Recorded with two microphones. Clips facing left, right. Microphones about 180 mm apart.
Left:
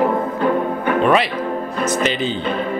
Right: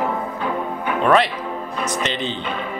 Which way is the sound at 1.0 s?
5° left (ahead or behind).